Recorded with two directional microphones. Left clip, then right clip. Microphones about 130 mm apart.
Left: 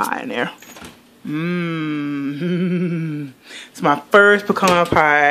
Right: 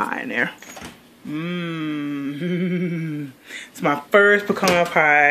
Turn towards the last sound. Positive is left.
turn(degrees=25)  # may be behind; listen again after turning